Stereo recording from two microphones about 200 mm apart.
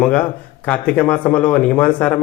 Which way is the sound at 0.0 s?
5° left (ahead or behind).